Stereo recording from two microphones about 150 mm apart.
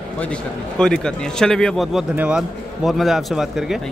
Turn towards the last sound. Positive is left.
turn(degrees=0)  # may be behind; listen again after turning